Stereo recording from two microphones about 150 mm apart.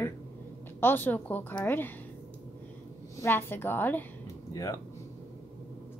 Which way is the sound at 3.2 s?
15° left (ahead or behind).